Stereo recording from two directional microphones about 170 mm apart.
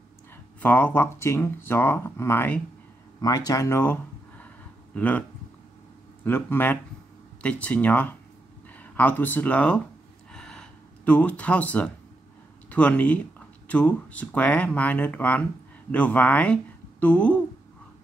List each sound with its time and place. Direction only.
0.6 s speech: 10° left (ahead or behind)
3.2 s speech: 20° left (ahead or behind)
6.2 s speech: 10° left (ahead or behind)
10.3 s a sound: 5° left (ahead or behind)
12.6 s speech: 10° left (ahead or behind)